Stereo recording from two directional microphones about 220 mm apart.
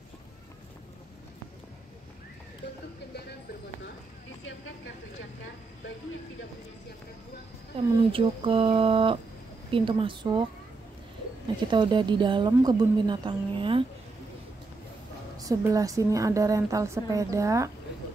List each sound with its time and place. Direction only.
8.1 s a woman's voice: 25° right (ahead or behind)
11.7 s a woman's voice: 20° right (ahead or behind)
15.3 s a woman's voice: 15° right (ahead or behind)